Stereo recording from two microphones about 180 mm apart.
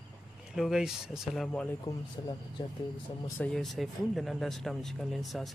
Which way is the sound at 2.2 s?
25° left (ahead or behind).